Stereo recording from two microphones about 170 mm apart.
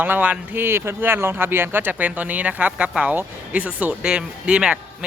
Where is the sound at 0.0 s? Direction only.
10° right (ahead or behind).